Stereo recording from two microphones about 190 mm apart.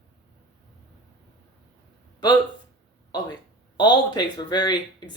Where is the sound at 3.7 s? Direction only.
25° left (ahead or behind).